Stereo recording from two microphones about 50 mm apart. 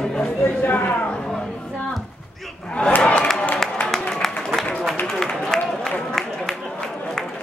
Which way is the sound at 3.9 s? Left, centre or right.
Centre.